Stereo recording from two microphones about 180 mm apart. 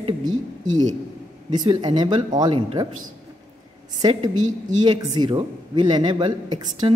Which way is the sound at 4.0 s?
20° right (ahead or behind).